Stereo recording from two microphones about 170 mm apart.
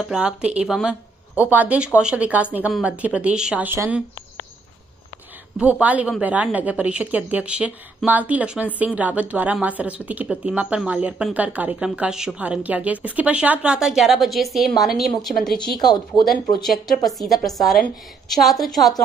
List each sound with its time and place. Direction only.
0.0 s a woman's voice: 5° right (ahead or behind)
5.6 s a woman's voice: 10° right (ahead or behind)
15.8 s speech: 25° left (ahead or behind)
16.6 s a woman's voice: centre (ahead or behind)